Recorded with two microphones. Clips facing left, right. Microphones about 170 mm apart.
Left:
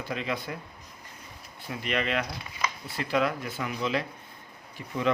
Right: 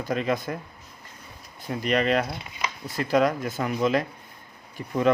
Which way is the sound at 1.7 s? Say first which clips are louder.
Right 6 dB; 40° right (ahead or behind).